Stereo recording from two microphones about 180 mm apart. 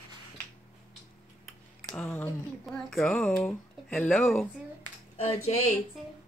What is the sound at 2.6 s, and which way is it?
Speech, 5° left (ahead or behind).